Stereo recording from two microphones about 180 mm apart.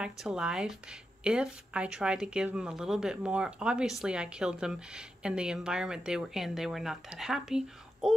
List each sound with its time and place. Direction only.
0.0 s a woman's voice: 5° right (ahead or behind)